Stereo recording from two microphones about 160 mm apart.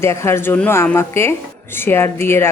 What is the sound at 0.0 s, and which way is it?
Speech, 15° left (ahead or behind).